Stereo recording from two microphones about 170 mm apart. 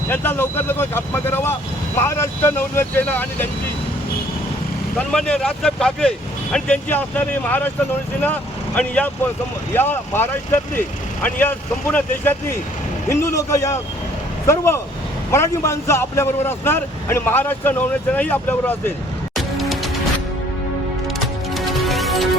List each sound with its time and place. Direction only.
0.1 s a man's voice: 10° left (ahead or behind)
4.9 s a man's voice: 5° left (ahead or behind)
19.4 s music: centre (ahead or behind)
21.5 s music: centre (ahead or behind)